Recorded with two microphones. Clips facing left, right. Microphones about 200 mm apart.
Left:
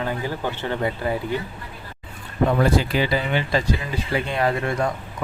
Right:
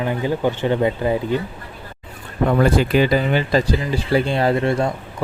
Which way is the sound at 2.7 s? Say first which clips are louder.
Right 5 dB; 55° right (ahead or behind).